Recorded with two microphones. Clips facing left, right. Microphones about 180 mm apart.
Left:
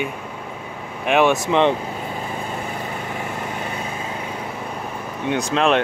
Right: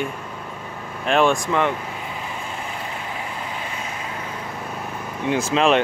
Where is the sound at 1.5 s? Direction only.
25° left (ahead or behind).